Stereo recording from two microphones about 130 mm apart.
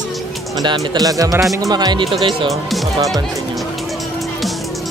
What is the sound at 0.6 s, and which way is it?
Speech, 30° right (ahead or behind).